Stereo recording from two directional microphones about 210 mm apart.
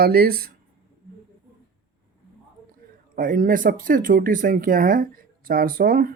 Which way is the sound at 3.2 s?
40° right (ahead or behind).